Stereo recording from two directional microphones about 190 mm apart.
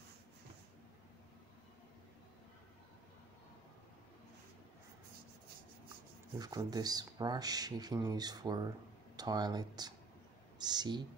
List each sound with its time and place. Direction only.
6.3 s speech: 20° right (ahead or behind)